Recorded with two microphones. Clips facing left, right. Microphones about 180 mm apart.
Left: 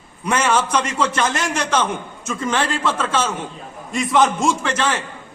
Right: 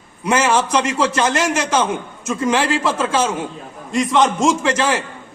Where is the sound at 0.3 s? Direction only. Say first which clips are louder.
Right 2 dB; 10° right (ahead or behind).